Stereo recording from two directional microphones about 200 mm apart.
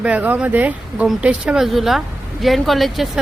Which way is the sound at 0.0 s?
5° right (ahead or behind).